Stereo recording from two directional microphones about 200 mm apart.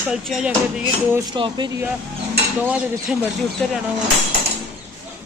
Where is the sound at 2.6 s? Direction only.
5° right (ahead or behind).